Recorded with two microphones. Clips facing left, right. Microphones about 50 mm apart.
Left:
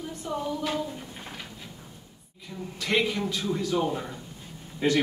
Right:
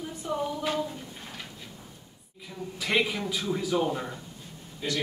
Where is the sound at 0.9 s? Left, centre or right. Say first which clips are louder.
Left 1 dB; centre.